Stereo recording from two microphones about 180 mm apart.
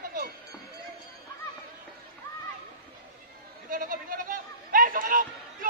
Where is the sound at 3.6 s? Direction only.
50° right (ahead or behind).